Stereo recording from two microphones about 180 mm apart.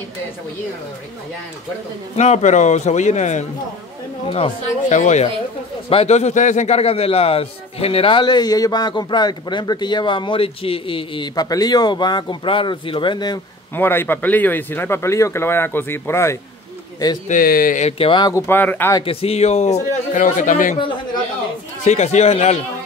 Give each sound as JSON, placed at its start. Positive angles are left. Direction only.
{"t": 2.1, "sound": "a man's voice", "side_deg": 40}
{"t": 13.7, "sound": "speech", "side_deg": 10}
{"t": 17.3, "sound": "a man's voice", "side_deg": 50}
{"t": 18.5, "sound": "speech", "side_deg": 10}
{"t": 18.9, "sound": "a man's voice", "side_deg": 30}
{"t": 20.8, "sound": "a man's voice", "side_deg": 25}
{"t": 21.8, "sound": "a man's voice", "side_deg": 40}